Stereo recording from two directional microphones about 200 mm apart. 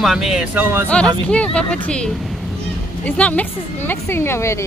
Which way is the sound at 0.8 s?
5° left (ahead or behind).